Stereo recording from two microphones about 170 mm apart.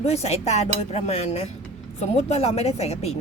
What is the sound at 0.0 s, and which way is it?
Speech, 40° left (ahead or behind).